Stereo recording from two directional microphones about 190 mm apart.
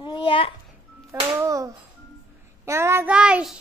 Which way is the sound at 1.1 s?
15° right (ahead or behind).